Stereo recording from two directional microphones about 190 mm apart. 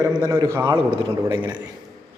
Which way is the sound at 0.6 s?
25° right (ahead or behind).